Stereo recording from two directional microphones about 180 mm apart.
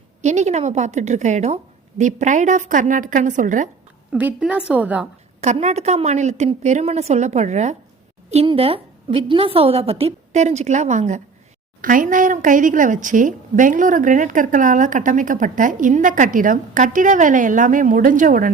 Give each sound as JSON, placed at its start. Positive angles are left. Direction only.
{"t": 0.2, "sound": "a woman's voice", "side_deg": -40}
{"t": 4.1, "sound": "a woman's voice", "side_deg": -5}
{"t": 5.4, "sound": "a woman's voice", "side_deg": -40}